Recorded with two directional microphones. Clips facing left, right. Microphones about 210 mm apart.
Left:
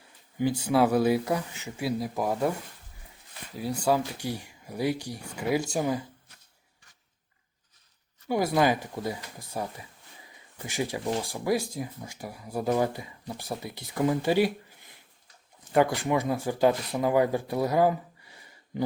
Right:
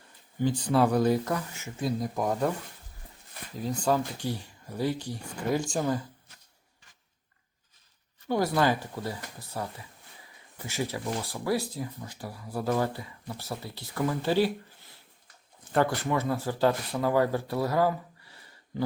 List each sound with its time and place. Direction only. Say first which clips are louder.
0.3 s speech: left 1 dB; 10° left (ahead or behind)
3.6 s speech: left 1 dB; 10° left (ahead or behind)
8.3 s speech: left 1 dB; 15° left (ahead or behind)